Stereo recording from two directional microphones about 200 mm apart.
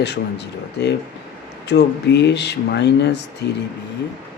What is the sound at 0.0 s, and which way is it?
Speech, 60° left (ahead or behind).